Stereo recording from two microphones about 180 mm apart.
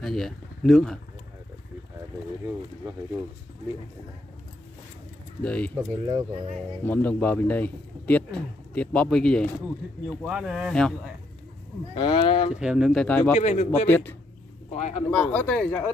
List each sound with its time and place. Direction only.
0.0 s speech: centre (ahead or behind)
5.4 s a man's voice: 5° left (ahead or behind)
5.8 s speech: 25° right (ahead or behind)
6.8 s a man's voice: 10° left (ahead or behind)
11.9 s speech: 30° left (ahead or behind)
12.5 s speech: 5° right (ahead or behind)
13.4 s speech: 40° left (ahead or behind)
13.8 s a man's voice: 10° left (ahead or behind)
14.7 s speech: 40° left (ahead or behind)
15.0 s speech: 5° left (ahead or behind)